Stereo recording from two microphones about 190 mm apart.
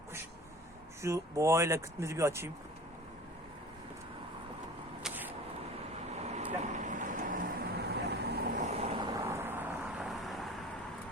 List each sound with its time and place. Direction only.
1.0 s speech: 15° right (ahead or behind)
5.0 s vehicle: 10° right (ahead or behind)
6.2 s vehicle: 40° right (ahead or behind); by 8.4 s 60° right (ahead or behind)
8.5 s vehicle: 35° right (ahead or behind)
9.1 s vehicle: 15° right (ahead or behind)
10.0 s vehicle: centre (ahead or behind)